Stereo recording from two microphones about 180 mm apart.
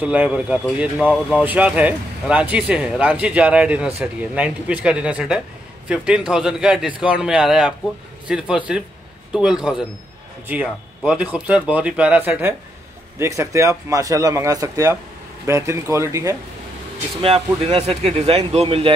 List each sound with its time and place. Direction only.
0.0 s a man's voice: 10° right (ahead or behind)
17.2 s speech: 30° right (ahead or behind)